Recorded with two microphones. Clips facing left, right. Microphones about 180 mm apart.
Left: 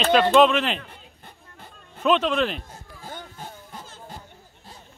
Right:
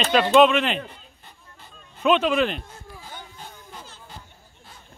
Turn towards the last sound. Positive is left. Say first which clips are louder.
# left 2 dB
turn(degrees=45)  # may be behind; listen again after turning